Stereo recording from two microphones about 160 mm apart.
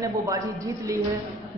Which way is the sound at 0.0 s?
20° right (ahead or behind).